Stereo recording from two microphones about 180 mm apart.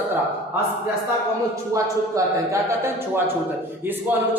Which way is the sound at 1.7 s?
15° right (ahead or behind).